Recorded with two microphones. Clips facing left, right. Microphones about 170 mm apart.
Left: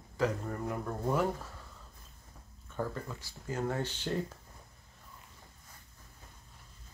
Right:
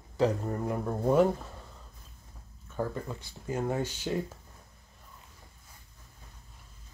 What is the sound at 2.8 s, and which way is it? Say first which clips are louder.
Speech: right 3 dB; 20° right (ahead or behind).